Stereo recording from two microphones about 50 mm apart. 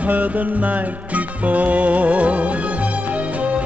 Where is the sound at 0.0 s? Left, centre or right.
Right.